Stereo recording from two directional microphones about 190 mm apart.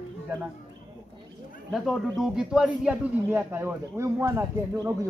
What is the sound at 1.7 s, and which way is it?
A man's voice, centre (ahead or behind).